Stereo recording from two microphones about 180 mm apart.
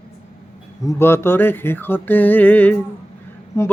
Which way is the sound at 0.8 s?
15° left (ahead or behind).